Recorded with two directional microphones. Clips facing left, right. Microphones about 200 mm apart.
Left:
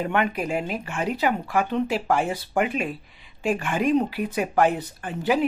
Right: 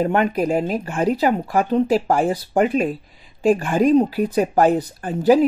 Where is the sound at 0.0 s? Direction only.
40° right (ahead or behind).